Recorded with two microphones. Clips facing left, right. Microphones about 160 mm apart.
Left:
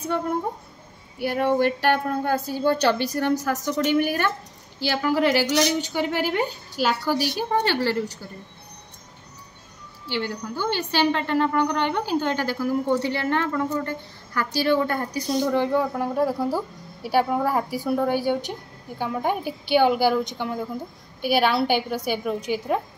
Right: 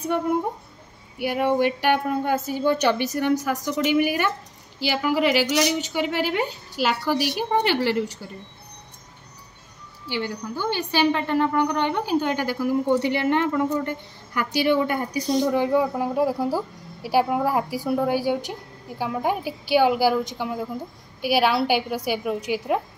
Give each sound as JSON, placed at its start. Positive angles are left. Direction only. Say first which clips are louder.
{"t": 1.1, "sound": "a woman's voice", "louder": "even", "side_deg": -10}
{"t": 2.5, "sound": "a woman's voice", "louder": "even", "side_deg": -20}
{"t": 7.3, "sound": "a woman's voice", "louder": "right 1 dB", "side_deg": -20}
{"t": 10.0, "sound": "a woman's voice", "louder": "even", "side_deg": -15}